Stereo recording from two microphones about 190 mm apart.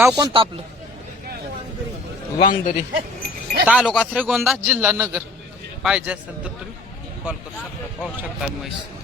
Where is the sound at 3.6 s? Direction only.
5° right (ahead or behind).